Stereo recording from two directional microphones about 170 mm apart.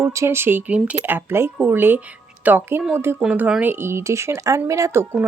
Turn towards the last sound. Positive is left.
turn(degrees=-15)  # may be behind; listen again after turning